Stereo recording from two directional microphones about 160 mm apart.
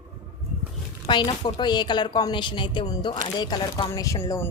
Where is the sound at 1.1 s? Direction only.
30° left (ahead or behind).